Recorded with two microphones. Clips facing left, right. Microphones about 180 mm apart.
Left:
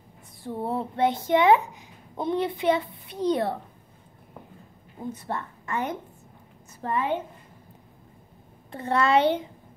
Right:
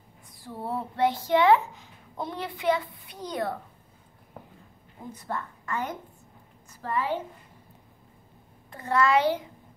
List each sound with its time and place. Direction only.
0.4 s a child's voice: 25° left (ahead or behind)
5.1 s a woman's voice: 25° left (ahead or behind)
8.7 s a woman's voice: 25° left (ahead or behind)